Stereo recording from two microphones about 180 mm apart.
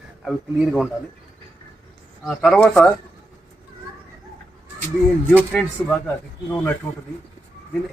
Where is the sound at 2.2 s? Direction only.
5° left (ahead or behind).